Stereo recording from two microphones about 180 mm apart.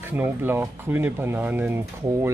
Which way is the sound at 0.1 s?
10° right (ahead or behind).